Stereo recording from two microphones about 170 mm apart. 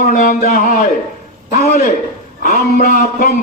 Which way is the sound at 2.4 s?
50° left (ahead or behind).